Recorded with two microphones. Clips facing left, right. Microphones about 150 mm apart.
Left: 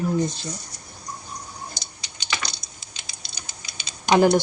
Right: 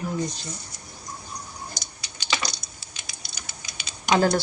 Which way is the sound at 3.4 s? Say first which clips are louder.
Even; 25° left (ahead or behind).